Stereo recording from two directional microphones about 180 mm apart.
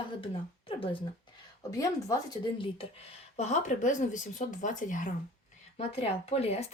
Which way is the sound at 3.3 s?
40° left (ahead or behind).